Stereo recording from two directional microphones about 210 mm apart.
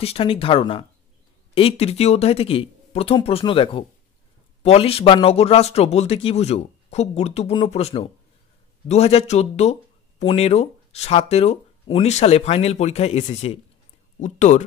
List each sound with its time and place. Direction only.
0.0 s speech: 25° left (ahead or behind)